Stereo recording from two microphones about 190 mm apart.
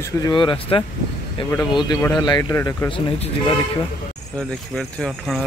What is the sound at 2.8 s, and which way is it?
Speech, 25° left (ahead or behind).